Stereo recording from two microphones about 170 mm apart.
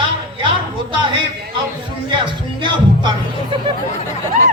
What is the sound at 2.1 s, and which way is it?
Music, 30° right (ahead or behind).